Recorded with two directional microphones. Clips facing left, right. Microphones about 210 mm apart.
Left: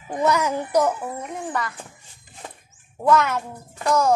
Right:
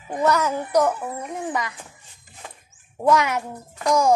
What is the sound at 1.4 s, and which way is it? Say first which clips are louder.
Speech: right 2 dB; 15° right (ahead or behind).